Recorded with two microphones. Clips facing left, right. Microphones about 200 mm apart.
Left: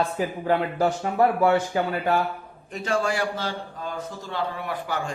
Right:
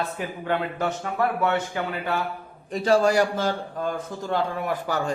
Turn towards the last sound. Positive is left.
turn(degrees=-40)  # may be behind; listen again after turning